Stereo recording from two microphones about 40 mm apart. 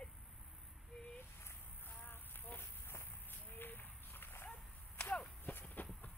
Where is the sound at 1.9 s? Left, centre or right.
Left.